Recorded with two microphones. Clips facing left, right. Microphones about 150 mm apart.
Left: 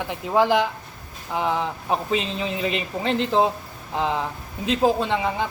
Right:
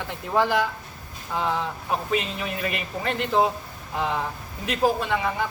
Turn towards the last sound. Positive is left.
turn(degrees=25)  # may be behind; listen again after turning